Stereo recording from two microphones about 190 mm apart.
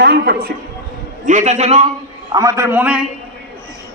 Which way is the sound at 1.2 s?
40° right (ahead or behind).